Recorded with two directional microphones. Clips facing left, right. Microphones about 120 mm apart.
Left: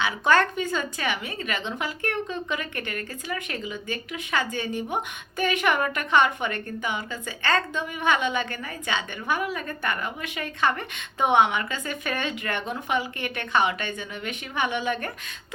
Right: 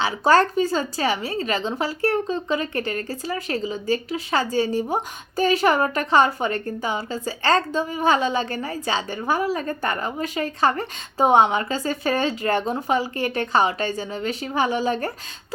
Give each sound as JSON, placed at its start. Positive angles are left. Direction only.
{"t": 0.0, "sound": "a woman's voice", "side_deg": -35}